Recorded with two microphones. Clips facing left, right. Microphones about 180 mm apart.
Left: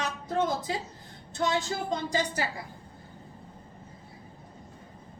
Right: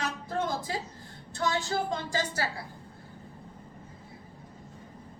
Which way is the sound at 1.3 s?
20° left (ahead or behind).